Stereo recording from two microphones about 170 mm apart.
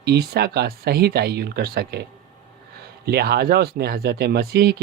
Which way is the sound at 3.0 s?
65° right (ahead or behind).